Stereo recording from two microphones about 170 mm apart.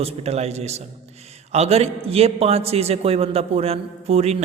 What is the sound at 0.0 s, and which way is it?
A man's voice, 40° right (ahead or behind).